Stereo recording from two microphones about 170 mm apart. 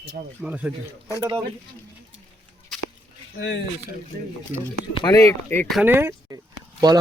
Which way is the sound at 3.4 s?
90° left.